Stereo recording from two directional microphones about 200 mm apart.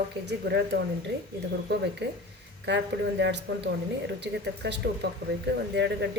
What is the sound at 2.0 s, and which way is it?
A woman's voice, 60° right (ahead or behind).